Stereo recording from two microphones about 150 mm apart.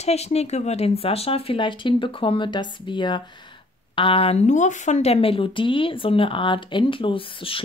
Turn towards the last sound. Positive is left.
turn(degrees=35)  # may be behind; listen again after turning